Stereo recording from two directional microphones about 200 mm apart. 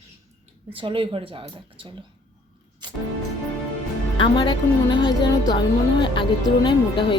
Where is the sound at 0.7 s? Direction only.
25° right (ahead or behind).